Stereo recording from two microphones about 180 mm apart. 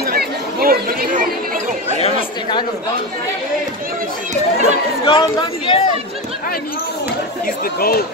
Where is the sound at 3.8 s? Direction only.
50° right (ahead or behind).